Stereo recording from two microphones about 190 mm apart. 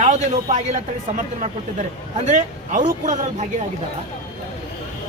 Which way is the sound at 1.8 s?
40° right (ahead or behind).